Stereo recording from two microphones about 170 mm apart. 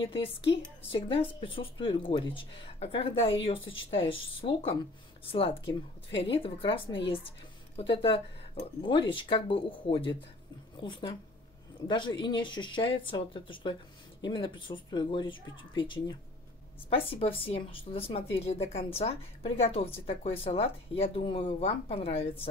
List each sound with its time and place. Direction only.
0.0 s speech: 35° left (ahead or behind)